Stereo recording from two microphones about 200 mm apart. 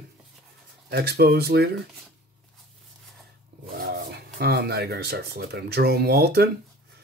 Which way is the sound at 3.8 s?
55° right (ahead or behind).